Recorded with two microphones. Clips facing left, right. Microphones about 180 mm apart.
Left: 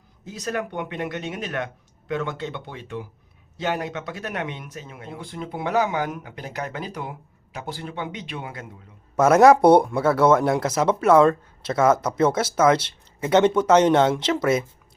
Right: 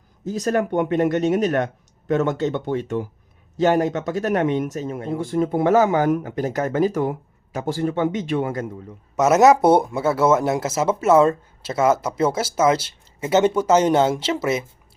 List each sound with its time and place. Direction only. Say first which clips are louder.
0.3 s speech: right 8 dB; 40° right (ahead or behind)
9.5 s speech: left 1 dB; 5° right (ahead or behind)
11.6 s speech: even; 25° right (ahead or behind)
13.3 s speech: even; 10° right (ahead or behind)
14.3 s speech: left 1 dB; 25° right (ahead or behind)